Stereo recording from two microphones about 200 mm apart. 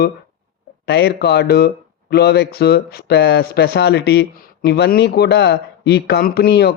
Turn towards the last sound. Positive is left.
turn(degrees=55)  # may be behind; listen again after turning